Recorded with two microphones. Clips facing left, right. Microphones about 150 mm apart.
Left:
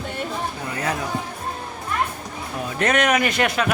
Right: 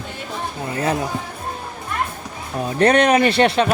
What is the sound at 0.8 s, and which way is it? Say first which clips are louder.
Speech: right 5 dB; 30° right (ahead or behind).